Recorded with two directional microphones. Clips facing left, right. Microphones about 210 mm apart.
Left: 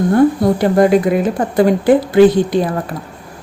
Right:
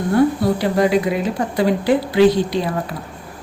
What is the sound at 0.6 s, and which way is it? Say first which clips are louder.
A woman's voice: left 6 dB; 50° left (ahead or behind).